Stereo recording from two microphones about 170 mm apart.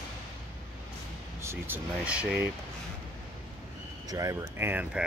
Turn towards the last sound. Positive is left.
turn(degrees=-10)  # may be behind; listen again after turning